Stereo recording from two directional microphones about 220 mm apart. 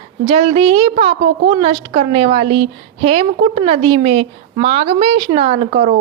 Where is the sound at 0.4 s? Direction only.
25° right (ahead or behind).